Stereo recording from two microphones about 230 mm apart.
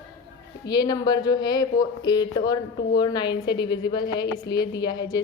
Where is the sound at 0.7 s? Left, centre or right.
Centre.